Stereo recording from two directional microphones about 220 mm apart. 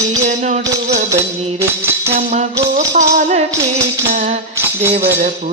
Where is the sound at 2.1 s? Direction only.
35° right (ahead or behind).